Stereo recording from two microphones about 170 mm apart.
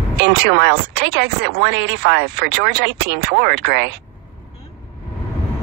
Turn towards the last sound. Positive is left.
turn(degrees=-75)  # may be behind; listen again after turning